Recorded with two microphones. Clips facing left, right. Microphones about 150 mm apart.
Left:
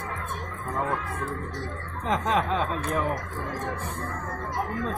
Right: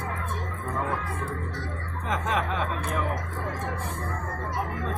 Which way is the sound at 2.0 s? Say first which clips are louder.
Left 3 dB; 25° left (ahead or behind).